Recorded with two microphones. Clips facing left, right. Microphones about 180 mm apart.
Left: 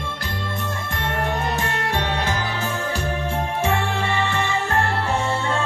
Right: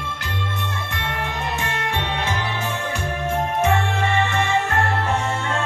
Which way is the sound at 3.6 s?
35° left (ahead or behind).